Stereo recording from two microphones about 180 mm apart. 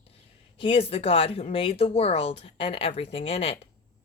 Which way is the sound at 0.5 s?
30° left (ahead or behind).